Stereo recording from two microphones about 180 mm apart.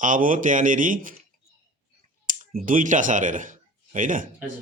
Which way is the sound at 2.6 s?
45° right (ahead or behind).